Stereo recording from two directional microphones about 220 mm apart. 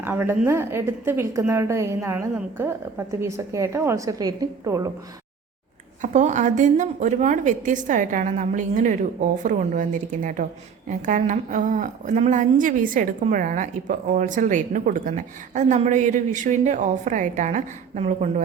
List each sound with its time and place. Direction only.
0.0 s a woman's voice: 10° right (ahead or behind)
6.0 s a woman's voice: 35° right (ahead or behind)